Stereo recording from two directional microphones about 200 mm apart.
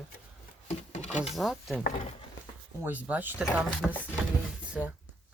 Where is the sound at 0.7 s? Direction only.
35° left (ahead or behind).